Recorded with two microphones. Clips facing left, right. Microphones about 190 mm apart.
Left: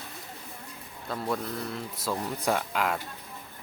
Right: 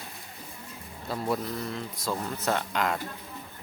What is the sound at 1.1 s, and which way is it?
Speech, 5° right (ahead or behind).